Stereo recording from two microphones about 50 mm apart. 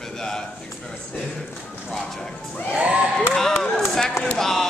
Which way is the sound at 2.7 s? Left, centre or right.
Right.